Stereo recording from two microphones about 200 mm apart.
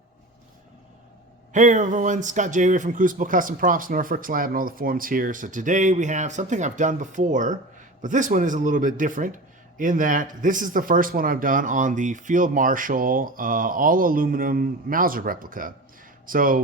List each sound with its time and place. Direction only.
1.5 s speech: 40° right (ahead or behind)